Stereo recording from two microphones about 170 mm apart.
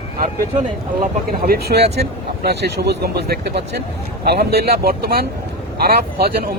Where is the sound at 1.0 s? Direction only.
60° right (ahead or behind).